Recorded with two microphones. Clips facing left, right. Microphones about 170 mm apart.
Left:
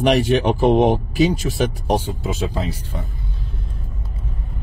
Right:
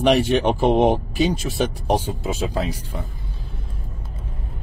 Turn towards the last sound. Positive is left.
turn(degrees=-5)  # may be behind; listen again after turning